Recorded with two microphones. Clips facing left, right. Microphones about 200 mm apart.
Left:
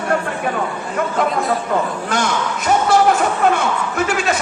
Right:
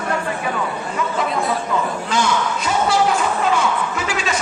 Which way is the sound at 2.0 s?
55° left (ahead or behind).